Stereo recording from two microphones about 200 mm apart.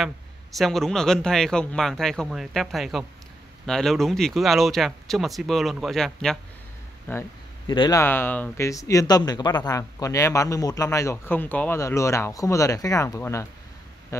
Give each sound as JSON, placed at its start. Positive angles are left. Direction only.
{"t": 0.6, "sound": "speech", "side_deg": 0}
{"t": 7.1, "sound": "a sound", "side_deg": 10}
{"t": 7.7, "sound": "speech", "side_deg": 25}
{"t": 8.0, "sound": "speech", "side_deg": 10}